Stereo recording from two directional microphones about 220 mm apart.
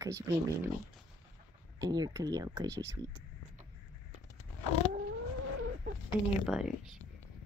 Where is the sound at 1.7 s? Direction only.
20° right (ahead or behind).